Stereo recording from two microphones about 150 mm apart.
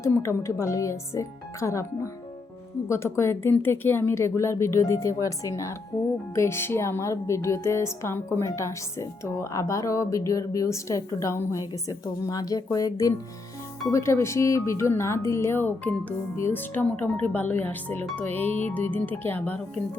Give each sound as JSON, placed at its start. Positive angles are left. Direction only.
{"t": 0.0, "sound": "speech", "side_deg": 20}
{"t": 2.9, "sound": "speech", "side_deg": 20}